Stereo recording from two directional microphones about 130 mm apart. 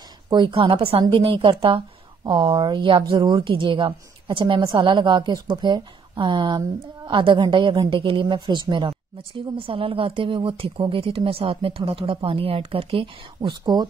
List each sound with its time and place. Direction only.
0.3 s a woman's voice: 40° right (ahead or behind)